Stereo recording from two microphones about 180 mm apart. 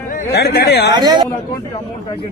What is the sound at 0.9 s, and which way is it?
Speech, 25° right (ahead or behind).